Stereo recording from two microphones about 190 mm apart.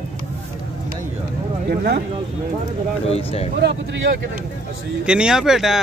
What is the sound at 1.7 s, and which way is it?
Speech, 55° right (ahead or behind).